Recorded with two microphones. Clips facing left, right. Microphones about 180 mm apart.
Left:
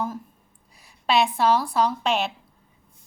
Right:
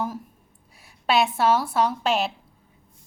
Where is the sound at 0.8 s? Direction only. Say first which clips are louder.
Even; centre (ahead or behind).